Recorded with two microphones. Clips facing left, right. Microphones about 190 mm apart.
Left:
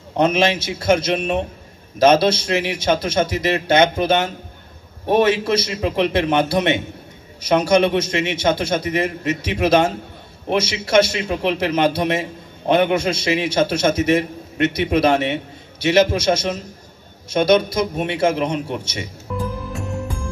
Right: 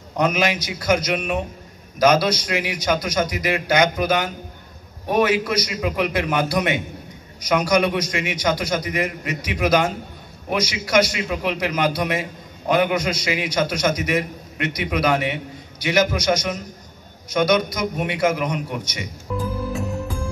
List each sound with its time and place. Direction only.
0.1 s a man's voice: 25° left (ahead or behind)